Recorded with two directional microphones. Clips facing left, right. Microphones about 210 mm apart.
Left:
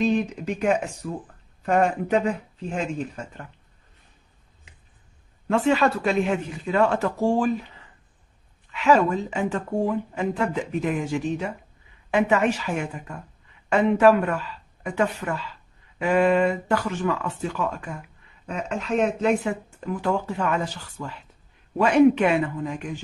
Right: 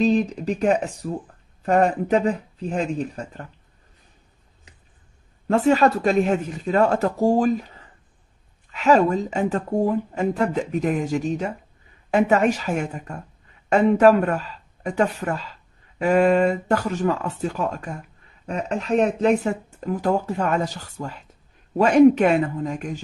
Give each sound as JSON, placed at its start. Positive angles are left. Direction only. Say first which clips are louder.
{"t": 0.0, "sound": "speech", "louder": "right 3 dB", "side_deg": -35}
{"t": 5.5, "sound": "speech", "louder": "right 3 dB", "side_deg": -40}